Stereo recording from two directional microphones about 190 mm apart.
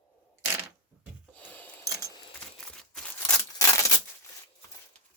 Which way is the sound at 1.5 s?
10° left (ahead or behind).